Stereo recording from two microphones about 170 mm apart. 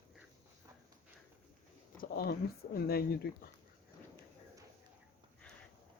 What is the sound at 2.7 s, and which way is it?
Speech, 65° left (ahead or behind).